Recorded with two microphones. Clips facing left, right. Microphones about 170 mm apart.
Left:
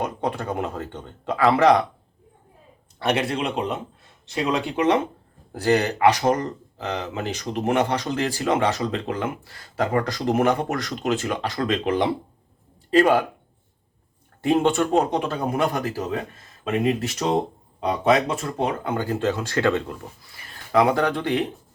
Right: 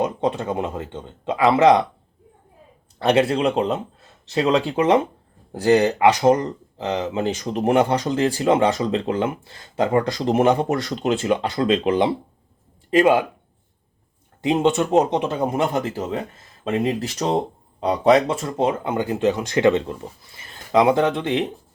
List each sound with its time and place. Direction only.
0.0 s speech: 25° right (ahead or behind)
3.0 s speech: 30° right (ahead or behind)
14.4 s speech: 20° right (ahead or behind)